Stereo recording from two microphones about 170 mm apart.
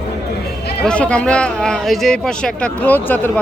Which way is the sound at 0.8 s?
5° left (ahead or behind).